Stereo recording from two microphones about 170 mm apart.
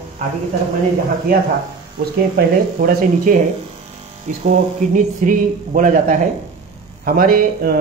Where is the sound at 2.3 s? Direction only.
65° right (ahead or behind).